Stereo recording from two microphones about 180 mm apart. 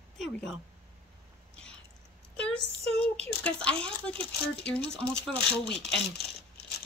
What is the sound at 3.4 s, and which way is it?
A woman's voice, 5° left (ahead or behind).